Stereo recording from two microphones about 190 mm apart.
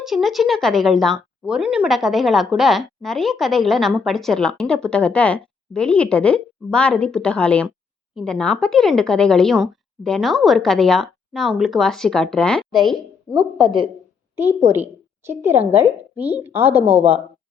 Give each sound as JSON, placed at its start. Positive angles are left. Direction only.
{"t": 0.0, "sound": "speech", "side_deg": 0}
{"t": 13.3, "sound": "speech", "side_deg": -25}
{"t": 15.2, "sound": "a woman's voice", "side_deg": -10}